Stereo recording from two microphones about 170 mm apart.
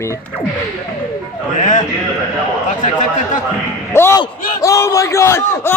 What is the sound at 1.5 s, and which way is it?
A man's voice, 50° left (ahead or behind).